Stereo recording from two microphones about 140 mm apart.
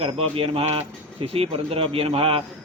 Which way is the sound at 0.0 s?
40° right (ahead or behind).